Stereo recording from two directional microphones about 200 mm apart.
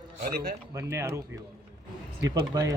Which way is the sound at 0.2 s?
50° right (ahead or behind).